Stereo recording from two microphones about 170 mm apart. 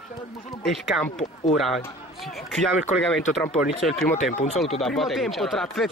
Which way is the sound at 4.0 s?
45° left (ahead or behind).